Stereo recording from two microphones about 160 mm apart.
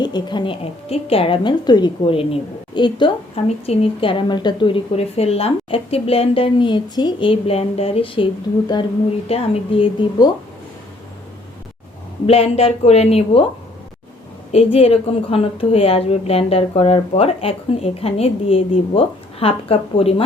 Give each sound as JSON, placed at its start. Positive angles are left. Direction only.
{"t": 0.0, "sound": "a woman's voice", "side_deg": 30}
{"t": 12.2, "sound": "a woman's voice", "side_deg": 40}
{"t": 14.5, "sound": "a woman's voice", "side_deg": 40}